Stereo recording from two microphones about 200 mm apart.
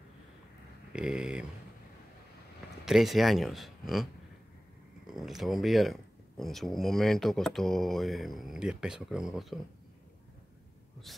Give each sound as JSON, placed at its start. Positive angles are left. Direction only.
{"t": 0.9, "sound": "speech", "side_deg": -5}
{"t": 2.8, "sound": "speech", "side_deg": 0}
{"t": 5.1, "sound": "speech", "side_deg": 0}
{"t": 11.1, "sound": "speech", "side_deg": 0}